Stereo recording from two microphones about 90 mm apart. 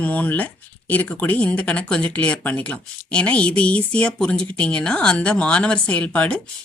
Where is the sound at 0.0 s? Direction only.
15° left (ahead or behind).